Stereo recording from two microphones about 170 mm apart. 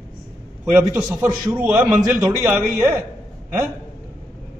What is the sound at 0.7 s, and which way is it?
A man's voice, 15° right (ahead or behind).